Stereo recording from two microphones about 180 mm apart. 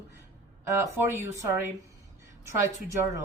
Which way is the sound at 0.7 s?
15° right (ahead or behind).